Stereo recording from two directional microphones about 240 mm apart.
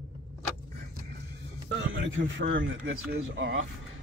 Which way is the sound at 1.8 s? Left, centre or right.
Right.